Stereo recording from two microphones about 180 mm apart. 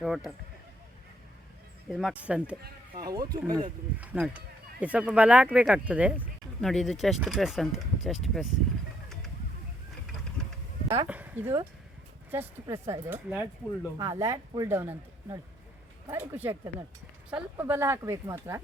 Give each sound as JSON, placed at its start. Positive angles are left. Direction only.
{"t": 0.0, "sound": "speech", "side_deg": 0}
{"t": 1.9, "sound": "speech", "side_deg": 0}
{"t": 2.9, "sound": "speech", "side_deg": -20}
{"t": 3.9, "sound": "speech", "side_deg": -5}
{"t": 10.8, "sound": "speech", "side_deg": -35}
{"t": 11.1, "sound": "speech", "side_deg": -10}
{"t": 14.0, "sound": "speech", "side_deg": -20}